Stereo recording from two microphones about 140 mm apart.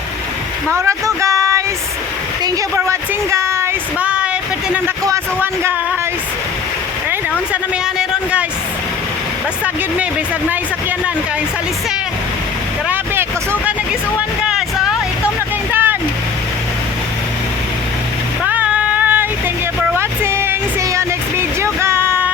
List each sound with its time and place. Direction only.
0.7 s speech: 20° right (ahead or behind)
2.4 s a sound: 25° right (ahead or behind)
5.0 s speech: 20° right (ahead or behind)
7.1 s a sound: 10° right (ahead or behind)
12.9 s vehicle: 15° right (ahead or behind)
18.4 s female singing: 10° right (ahead or behind)
19.9 s music: 15° right (ahead or behind)